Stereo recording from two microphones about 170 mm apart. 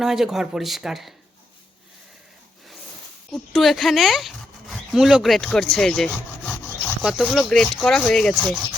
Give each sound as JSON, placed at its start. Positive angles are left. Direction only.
{"t": 0.0, "sound": "speech", "side_deg": 0}
{"t": 3.3, "sound": "speech", "side_deg": 0}
{"t": 7.0, "sound": "speech", "side_deg": -5}